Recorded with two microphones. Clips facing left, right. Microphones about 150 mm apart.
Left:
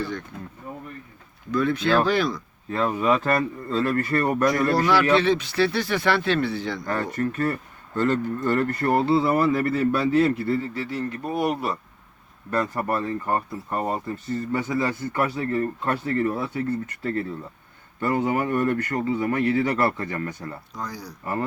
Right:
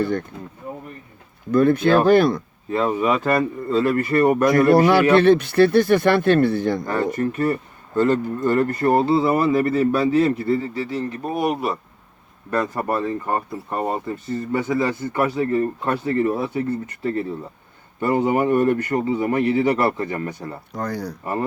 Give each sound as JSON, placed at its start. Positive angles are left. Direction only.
{"t": 0.0, "sound": "speech", "side_deg": -55}
{"t": 1.5, "sound": "a man's voice", "side_deg": -50}
{"t": 2.6, "sound": "speech", "side_deg": -20}
{"t": 4.4, "sound": "a man's voice", "side_deg": -60}
{"t": 6.8, "sound": "speech", "side_deg": -25}
{"t": 20.7, "sound": "speech", "side_deg": -60}